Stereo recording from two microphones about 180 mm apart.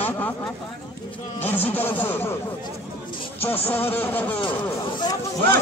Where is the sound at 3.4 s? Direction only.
10° left (ahead or behind).